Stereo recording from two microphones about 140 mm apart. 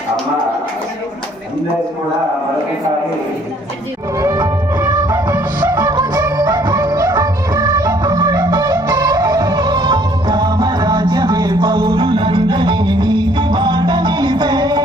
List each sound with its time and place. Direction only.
4.2 s music: 20° right (ahead or behind)
5.7 s music: 30° right (ahead or behind)